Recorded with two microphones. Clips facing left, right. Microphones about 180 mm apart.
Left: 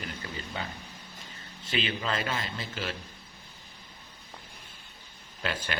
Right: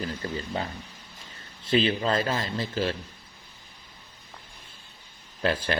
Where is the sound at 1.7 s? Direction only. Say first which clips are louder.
Right 8 dB; 35° right (ahead or behind).